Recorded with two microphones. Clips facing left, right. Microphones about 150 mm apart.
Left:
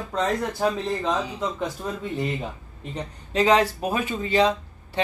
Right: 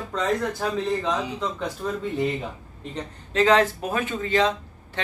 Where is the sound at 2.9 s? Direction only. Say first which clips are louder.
Right 1 dB; 15° left (ahead or behind).